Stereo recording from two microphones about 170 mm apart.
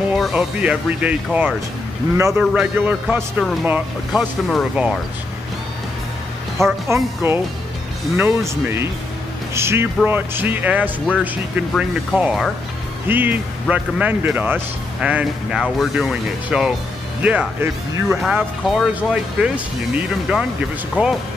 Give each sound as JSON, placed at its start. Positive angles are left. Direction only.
{"t": 0.1, "sound": "speech", "side_deg": -5}
{"t": 2.4, "sound": "speech", "side_deg": -5}
{"t": 3.2, "sound": "speech", "side_deg": 5}
{"t": 3.6, "sound": "speech", "side_deg": -10}
{"t": 6.6, "sound": "speech", "side_deg": -15}